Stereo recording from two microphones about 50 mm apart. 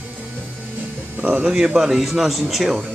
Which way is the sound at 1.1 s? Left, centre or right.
Right.